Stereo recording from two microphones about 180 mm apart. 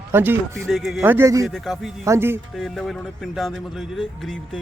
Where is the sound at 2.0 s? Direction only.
15° right (ahead or behind).